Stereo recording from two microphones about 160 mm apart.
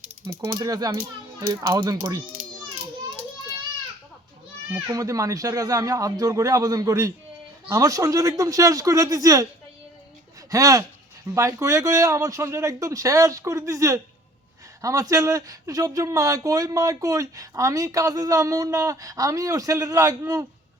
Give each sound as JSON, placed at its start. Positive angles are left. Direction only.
{"t": 0.2, "sound": "speech", "side_deg": -25}
{"t": 4.7, "sound": "speech", "side_deg": -20}
{"t": 10.5, "sound": "speech", "side_deg": -20}